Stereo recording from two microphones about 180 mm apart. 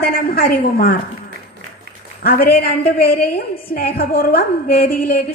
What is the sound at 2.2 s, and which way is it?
A woman's voice, 55° left (ahead or behind).